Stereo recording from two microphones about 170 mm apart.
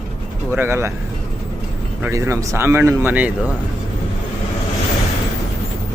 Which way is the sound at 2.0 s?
15° right (ahead or behind).